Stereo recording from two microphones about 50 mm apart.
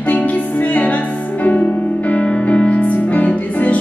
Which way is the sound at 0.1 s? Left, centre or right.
Left.